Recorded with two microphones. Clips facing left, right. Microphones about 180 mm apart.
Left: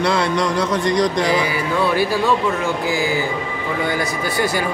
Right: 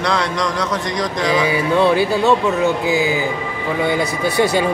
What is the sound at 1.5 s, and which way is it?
Speech, 20° right (ahead or behind).